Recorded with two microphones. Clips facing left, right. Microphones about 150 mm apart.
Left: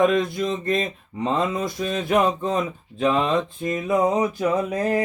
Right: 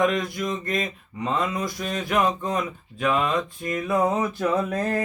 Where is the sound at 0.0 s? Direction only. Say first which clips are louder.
Left 4 dB; 25° left (ahead or behind).